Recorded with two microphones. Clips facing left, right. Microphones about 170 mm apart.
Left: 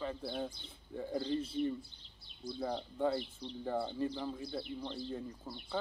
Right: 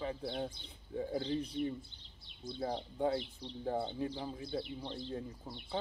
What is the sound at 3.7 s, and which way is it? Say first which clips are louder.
Speech: right 1 dB; 20° right (ahead or behind).